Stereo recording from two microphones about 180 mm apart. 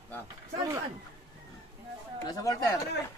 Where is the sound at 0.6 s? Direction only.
15° right (ahead or behind).